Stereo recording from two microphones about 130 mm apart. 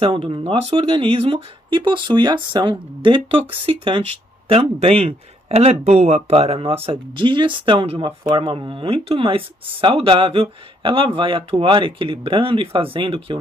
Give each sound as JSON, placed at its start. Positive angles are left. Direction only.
{"t": 0.0, "sound": "speech", "side_deg": -40}